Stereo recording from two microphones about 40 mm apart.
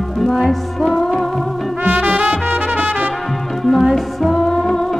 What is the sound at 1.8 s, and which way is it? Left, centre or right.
Music, right.